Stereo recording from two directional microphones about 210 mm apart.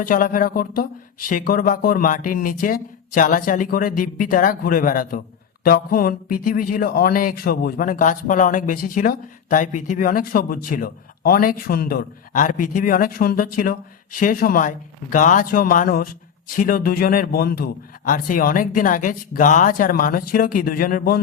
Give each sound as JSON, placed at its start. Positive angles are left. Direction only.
{"t": 0.0, "sound": "a man's voice", "side_deg": 40}